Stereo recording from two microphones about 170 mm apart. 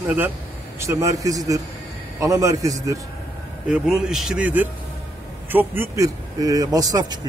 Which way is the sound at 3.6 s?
5° right (ahead or behind).